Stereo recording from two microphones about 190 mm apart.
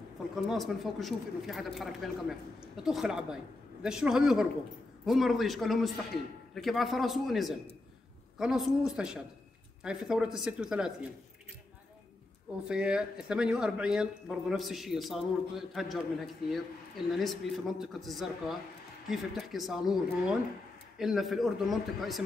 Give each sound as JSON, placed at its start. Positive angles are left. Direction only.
{"t": 0.5, "sound": "speech", "side_deg": 0}
{"t": 12.6, "sound": "speech", "side_deg": -5}